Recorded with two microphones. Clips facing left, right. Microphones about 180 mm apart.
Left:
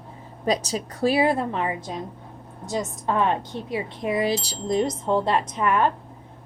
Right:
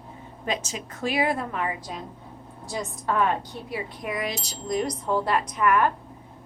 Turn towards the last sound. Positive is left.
turn(degrees=25)  # may be behind; listen again after turning